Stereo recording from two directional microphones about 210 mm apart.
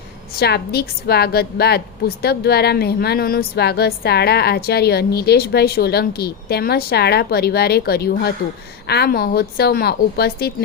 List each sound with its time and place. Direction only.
0.3 s a woman's voice: 50° left (ahead or behind)